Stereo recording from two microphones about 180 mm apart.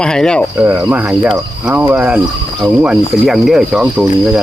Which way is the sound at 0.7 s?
10° right (ahead or behind).